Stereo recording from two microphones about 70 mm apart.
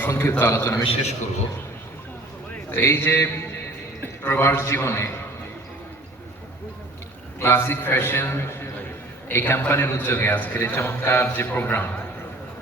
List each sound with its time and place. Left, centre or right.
0.0 s a man's voice: left
2.6 s a man's voice: left
7.3 s a man's voice: left
10.8 s a man's voice: left